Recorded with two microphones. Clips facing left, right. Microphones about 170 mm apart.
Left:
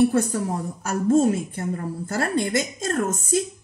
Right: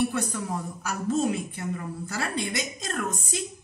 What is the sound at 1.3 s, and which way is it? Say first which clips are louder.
A woman's voice: left 4 dB; 45° left (ahead or behind).